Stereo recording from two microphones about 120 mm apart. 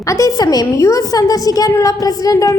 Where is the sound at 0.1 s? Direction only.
30° left (ahead or behind).